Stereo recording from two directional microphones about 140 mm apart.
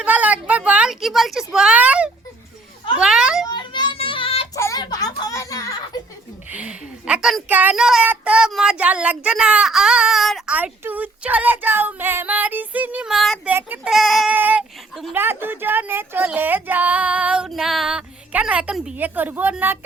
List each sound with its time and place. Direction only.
0.0 s a woman's voice: 10° right (ahead or behind)
3.0 s a sound: 5° right (ahead or behind)
3.4 s child singing: 35° left (ahead or behind)
4.5 s a sound: 25° left (ahead or behind)
6.5 s a woman's voice: 10° right (ahead or behind)
10.5 s speech: 10° right (ahead or behind)
13.5 s speech: 15° right (ahead or behind)
13.9 s speech: centre (ahead or behind)
14.3 s speech: 10° right (ahead or behind)